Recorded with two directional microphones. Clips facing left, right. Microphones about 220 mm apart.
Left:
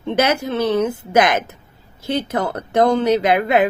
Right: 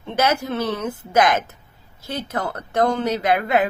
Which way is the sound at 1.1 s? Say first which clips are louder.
Left 1 dB; 15° left (ahead or behind).